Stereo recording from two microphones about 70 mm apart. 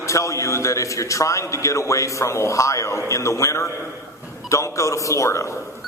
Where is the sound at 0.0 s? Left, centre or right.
Left.